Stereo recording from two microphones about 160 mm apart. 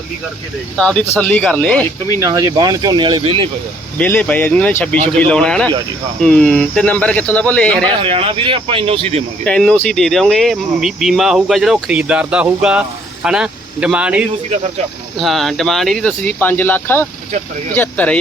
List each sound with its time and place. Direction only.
0.8 s speech: 5° left (ahead or behind)
2.2 s speech: 25° right (ahead or behind)
3.9 s speech: 10° left (ahead or behind)
8.0 s speech: 35° right (ahead or behind)
9.4 s speech: 5° left (ahead or behind)